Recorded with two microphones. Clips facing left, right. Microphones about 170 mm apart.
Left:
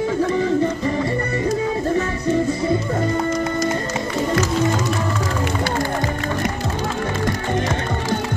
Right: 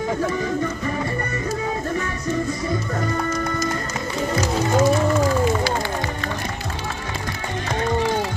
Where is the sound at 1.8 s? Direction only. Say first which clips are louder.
Left 5 dB; 30° left (ahead or behind).